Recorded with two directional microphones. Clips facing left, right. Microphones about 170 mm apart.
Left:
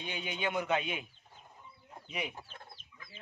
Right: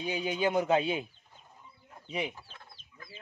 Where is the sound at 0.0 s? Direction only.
40° right (ahead or behind).